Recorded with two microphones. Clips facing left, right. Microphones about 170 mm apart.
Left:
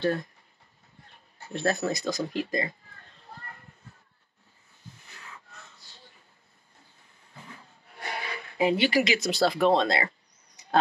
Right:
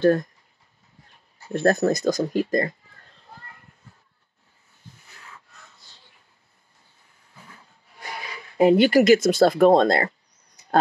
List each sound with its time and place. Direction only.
0.0 s speech: 45° right (ahead or behind)
1.5 s speech: 45° right (ahead or behind)
8.5 s speech: 50° right (ahead or behind)